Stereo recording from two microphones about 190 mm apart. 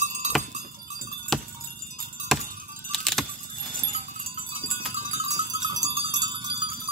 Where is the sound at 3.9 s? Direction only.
40° right (ahead or behind).